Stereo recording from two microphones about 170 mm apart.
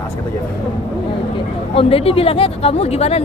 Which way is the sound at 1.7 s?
35° left (ahead or behind).